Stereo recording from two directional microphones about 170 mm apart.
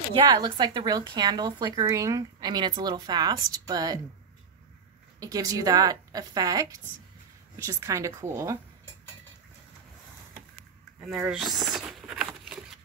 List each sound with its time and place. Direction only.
0.1 s a woman's voice: 25° right (ahead or behind)
5.2 s a woman's voice: 20° right (ahead or behind)
11.1 s a sound: centre (ahead or behind)